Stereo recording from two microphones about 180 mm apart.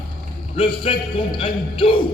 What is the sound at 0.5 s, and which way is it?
A man's voice, 30° left (ahead or behind).